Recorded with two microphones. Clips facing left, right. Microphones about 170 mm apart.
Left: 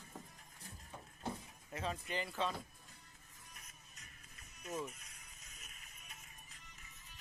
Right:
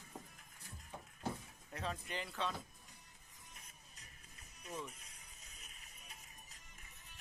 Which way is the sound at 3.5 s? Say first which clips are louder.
Even; 35° right (ahead or behind).